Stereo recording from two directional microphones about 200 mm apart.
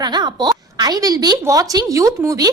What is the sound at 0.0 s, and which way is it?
A woman's voice, 20° right (ahead or behind).